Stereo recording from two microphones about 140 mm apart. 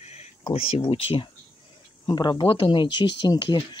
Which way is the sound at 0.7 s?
40° left (ahead or behind).